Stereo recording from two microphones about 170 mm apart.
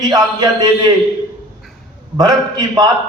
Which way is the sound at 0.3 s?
25° right (ahead or behind).